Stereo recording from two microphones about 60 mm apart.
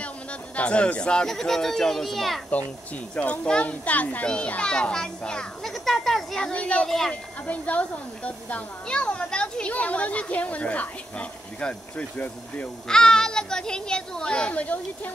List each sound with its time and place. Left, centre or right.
0.6 s speech: left; by 2.4 s centre
3.2 s a child's voice: centre
5.7 s speech: centre
6.5 s a child's voice: left